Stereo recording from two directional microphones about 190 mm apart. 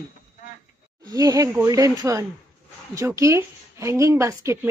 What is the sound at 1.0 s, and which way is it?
A woman's voice, 20° right (ahead or behind).